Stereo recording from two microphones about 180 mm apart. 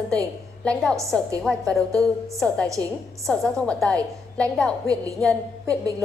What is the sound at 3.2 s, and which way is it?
A woman's voice, 5° left (ahead or behind).